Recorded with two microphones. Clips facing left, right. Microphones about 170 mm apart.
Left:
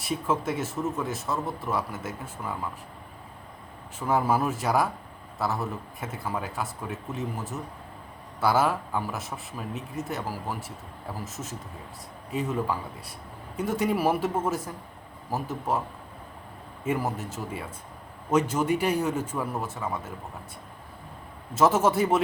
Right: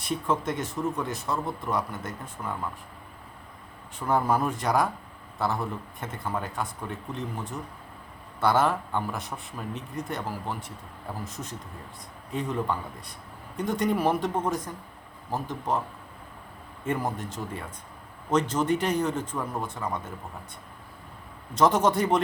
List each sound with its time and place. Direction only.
0.0 s speech: 5° left (ahead or behind)
4.0 s a man's voice: 5° left (ahead or behind)
16.8 s a man's voice: 5° left (ahead or behind)
21.5 s speech: 5° left (ahead or behind)